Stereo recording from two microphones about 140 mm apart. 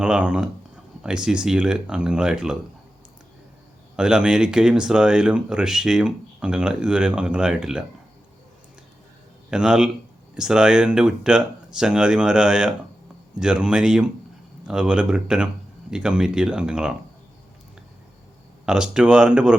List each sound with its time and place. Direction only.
0.0 s speech: 5° right (ahead or behind)
3.9 s speech: 5° right (ahead or behind)
9.5 s speech: 5° right (ahead or behind)
18.6 s speech: 5° right (ahead or behind)